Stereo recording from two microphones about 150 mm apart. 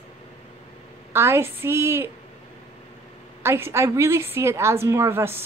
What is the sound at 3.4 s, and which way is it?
A woman's voice, 15° right (ahead or behind).